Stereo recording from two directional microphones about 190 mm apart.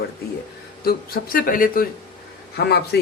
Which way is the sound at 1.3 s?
45° left (ahead or behind).